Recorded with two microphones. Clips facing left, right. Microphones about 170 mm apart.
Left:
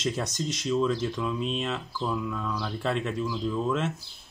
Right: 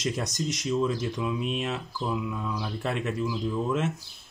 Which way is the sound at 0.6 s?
10° right (ahead or behind).